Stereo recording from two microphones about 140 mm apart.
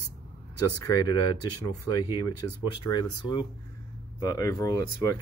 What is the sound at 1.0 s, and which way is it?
Speech, 30° left (ahead or behind).